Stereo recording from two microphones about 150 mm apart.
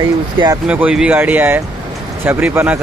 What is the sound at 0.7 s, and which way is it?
Speech, 5° right (ahead or behind).